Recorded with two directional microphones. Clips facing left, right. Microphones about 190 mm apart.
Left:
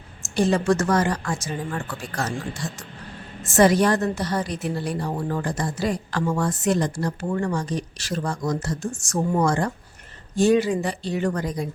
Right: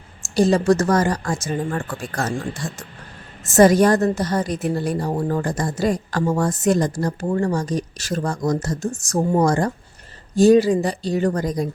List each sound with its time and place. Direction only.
0.3 s a woman's voice: 35° right (ahead or behind)